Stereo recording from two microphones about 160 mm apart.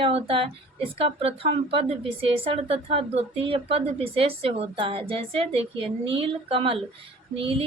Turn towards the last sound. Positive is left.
turn(degrees=-35)  # may be behind; listen again after turning